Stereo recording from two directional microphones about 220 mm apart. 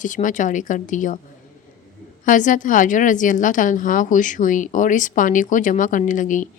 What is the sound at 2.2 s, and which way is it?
A woman's voice, 35° left (ahead or behind).